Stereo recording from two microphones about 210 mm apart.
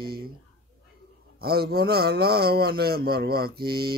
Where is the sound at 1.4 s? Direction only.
50° right (ahead or behind).